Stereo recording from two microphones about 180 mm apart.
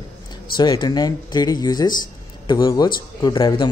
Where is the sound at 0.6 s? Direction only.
25° left (ahead or behind).